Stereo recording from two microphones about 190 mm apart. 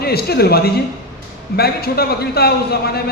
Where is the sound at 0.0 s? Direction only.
55° left (ahead or behind).